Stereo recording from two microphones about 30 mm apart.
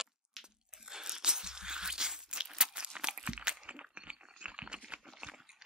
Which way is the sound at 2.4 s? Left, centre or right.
Right.